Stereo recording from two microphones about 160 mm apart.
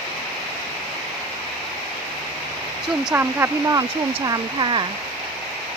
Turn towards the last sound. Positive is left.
turn(degrees=-30)  # may be behind; listen again after turning